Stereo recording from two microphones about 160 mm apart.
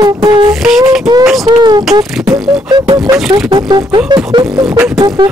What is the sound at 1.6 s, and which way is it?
Beatboxing, 25° right (ahead or behind).